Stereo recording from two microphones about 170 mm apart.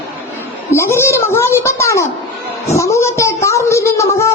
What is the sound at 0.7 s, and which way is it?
Speech, 15° left (ahead or behind).